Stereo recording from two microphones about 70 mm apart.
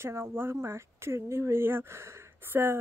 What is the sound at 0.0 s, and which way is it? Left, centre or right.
Speech, right.